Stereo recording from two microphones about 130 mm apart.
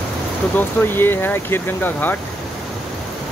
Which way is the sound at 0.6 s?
15° left (ahead or behind).